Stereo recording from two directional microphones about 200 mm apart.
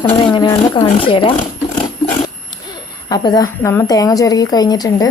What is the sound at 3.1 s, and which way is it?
A woman's voice, 20° left (ahead or behind).